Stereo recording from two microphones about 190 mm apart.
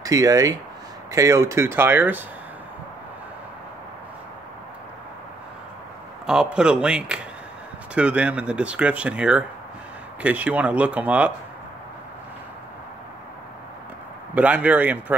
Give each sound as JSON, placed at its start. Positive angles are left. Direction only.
{"t": 0.0, "sound": "speech", "side_deg": -20}
{"t": 6.2, "sound": "speech", "side_deg": -5}
{"t": 14.3, "sound": "speech", "side_deg": -5}